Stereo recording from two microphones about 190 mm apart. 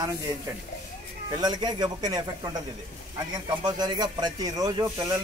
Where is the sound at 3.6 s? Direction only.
20° right (ahead or behind).